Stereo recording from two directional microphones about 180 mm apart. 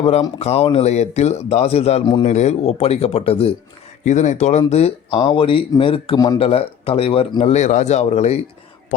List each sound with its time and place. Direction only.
0.0 s speech: 35° left (ahead or behind)